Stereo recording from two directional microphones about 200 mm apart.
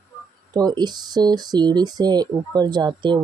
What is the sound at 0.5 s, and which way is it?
Speech, 20° right (ahead or behind).